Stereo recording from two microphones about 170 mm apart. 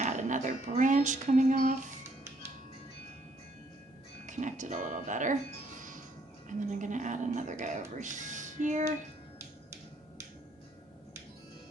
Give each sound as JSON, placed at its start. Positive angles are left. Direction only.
{"t": 0.0, "sound": "music", "side_deg": -45}
{"t": 4.3, "sound": "speech", "side_deg": -45}
{"t": 6.5, "sound": "speech", "side_deg": -50}